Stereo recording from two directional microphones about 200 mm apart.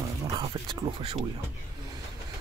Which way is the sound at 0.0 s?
25° right (ahead or behind).